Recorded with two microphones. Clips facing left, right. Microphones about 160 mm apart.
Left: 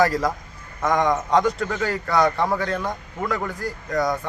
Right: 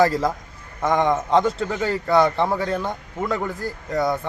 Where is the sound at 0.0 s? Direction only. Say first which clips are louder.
Right 1 dB; 25° right (ahead or behind).